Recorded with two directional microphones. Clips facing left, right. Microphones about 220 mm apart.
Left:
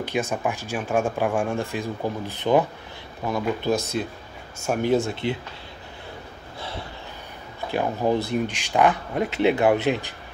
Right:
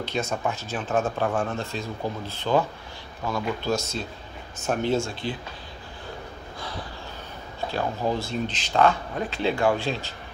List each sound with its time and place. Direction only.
0.0 s speech: 15° left (ahead or behind)
3.7 s speech: 55° left (ahead or behind)
4.6 s speech: 15° left (ahead or behind)
6.6 s a sound: 25° left (ahead or behind)
7.7 s speech: 15° left (ahead or behind)